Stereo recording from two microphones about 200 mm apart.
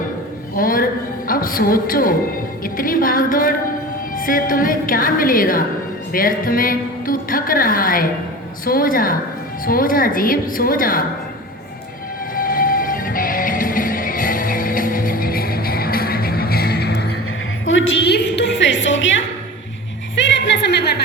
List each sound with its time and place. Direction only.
0.5 s a sound: 45° left (ahead or behind)
1.3 s a woman's voice: 45° left (ahead or behind)
12.4 s music: 45° left (ahead or behind)
17.7 s music: 70° left (ahead or behind)